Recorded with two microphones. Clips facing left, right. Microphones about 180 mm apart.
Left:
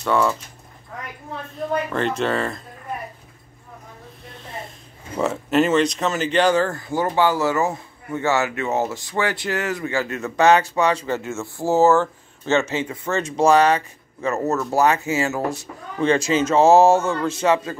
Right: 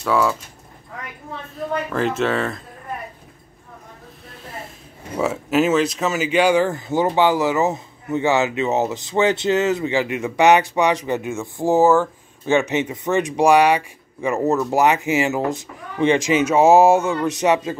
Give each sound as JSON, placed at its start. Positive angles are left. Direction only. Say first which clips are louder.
{"t": 0.0, "sound": "speech", "louder": "right 1 dB", "side_deg": 0}
{"t": 1.9, "sound": "speech", "louder": "right 2 dB", "side_deg": 0}
{"t": 5.2, "sound": "speech", "louder": "even", "side_deg": -5}